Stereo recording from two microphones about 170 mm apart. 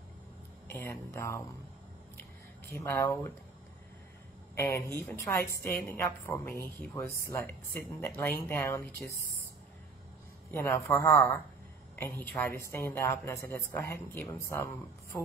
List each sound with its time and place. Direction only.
0.7 s speech: 15° left (ahead or behind)
2.8 s a woman's voice: 10° left (ahead or behind)
4.6 s a woman's voice: 15° left (ahead or behind)
10.5 s a woman's voice: 10° left (ahead or behind)